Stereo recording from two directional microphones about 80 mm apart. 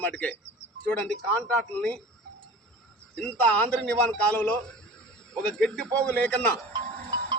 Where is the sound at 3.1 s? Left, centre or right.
Centre.